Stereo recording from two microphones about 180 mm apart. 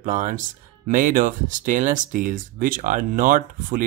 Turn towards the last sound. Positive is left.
turn(degrees=-50)  # may be behind; listen again after turning